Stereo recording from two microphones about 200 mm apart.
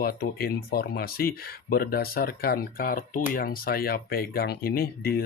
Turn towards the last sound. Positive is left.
turn(degrees=50)  # may be behind; listen again after turning